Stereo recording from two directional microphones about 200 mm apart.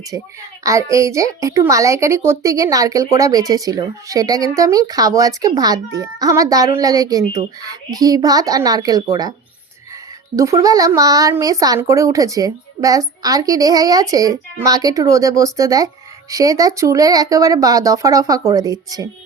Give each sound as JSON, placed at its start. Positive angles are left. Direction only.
{"t": 0.6, "sound": "a woman's voice", "side_deg": -15}
{"t": 10.3, "sound": "a woman's voice", "side_deg": -15}